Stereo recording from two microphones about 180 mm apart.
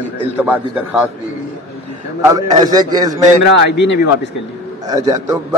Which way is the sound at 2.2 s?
20° right (ahead or behind).